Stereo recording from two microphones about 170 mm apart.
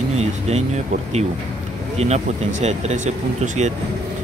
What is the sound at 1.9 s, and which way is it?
Speech, 40° right (ahead or behind).